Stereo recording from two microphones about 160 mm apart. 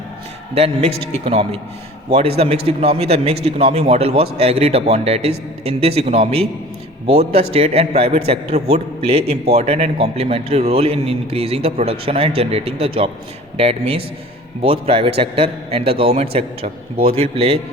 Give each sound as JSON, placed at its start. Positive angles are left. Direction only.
{"t": 0.5, "sound": "a man's voice", "side_deg": -40}
{"t": 16.6, "sound": "a man's voice", "side_deg": -70}
{"t": 17.2, "sound": "a man's voice", "side_deg": -40}